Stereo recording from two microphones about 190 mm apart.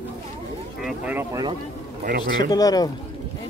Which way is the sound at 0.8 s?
5° right (ahead or behind).